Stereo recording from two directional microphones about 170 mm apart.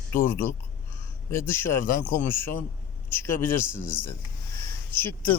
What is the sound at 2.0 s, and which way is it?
Speech, 50° left (ahead or behind).